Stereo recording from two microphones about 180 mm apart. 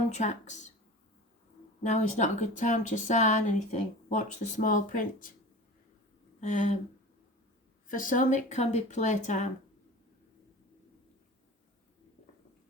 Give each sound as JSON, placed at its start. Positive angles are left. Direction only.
{"t": 0.1, "sound": "a woman's voice", "side_deg": 40}
{"t": 1.8, "sound": "speech", "side_deg": 40}
{"t": 6.4, "sound": "a woman's voice", "side_deg": 40}
{"t": 7.9, "sound": "speech", "side_deg": 50}